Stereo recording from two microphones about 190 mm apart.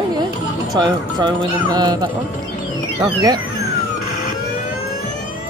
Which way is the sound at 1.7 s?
25° right (ahead or behind).